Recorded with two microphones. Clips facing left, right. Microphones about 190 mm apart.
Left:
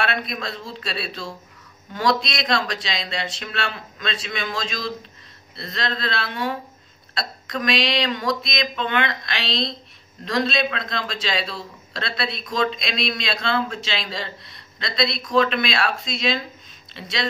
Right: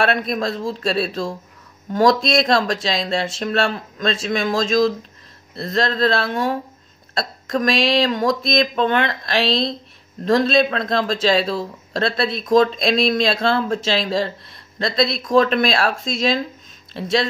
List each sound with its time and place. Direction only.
0.0 s a man's voice: 50° right (ahead or behind)